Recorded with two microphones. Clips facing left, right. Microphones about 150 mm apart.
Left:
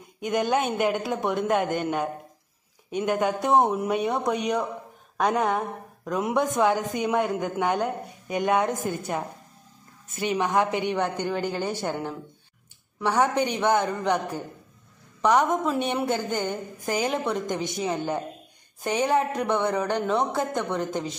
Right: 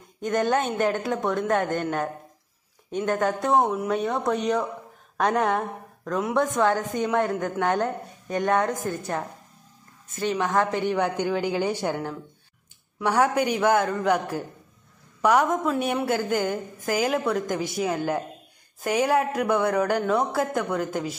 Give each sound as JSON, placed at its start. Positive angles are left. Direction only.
{"t": 0.2, "sound": "a woman's voice", "side_deg": 10}
{"t": 3.4, "sound": "a woman's voice", "side_deg": 20}
{"t": 6.0, "sound": "a woman's voice", "side_deg": 15}
{"t": 10.2, "sound": "a woman's voice", "side_deg": 15}
{"t": 10.8, "sound": "a woman's voice", "side_deg": -5}
{"t": 13.2, "sound": "a woman's voice", "side_deg": -10}
{"t": 15.2, "sound": "a woman's voice", "side_deg": -5}